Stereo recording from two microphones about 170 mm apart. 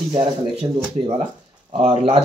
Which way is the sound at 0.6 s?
35° right (ahead or behind).